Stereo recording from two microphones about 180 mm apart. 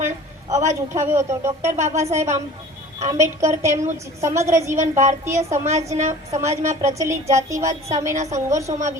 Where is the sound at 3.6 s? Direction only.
15° right (ahead or behind).